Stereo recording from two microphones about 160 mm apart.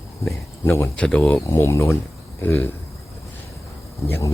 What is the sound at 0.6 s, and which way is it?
Speech, 15° left (ahead or behind).